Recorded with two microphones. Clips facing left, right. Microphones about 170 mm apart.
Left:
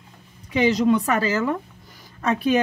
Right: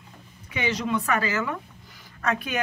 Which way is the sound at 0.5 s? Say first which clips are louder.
Left 9 dB; 35° left (ahead or behind).